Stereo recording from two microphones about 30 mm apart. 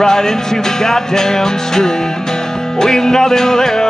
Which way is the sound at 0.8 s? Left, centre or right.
Centre.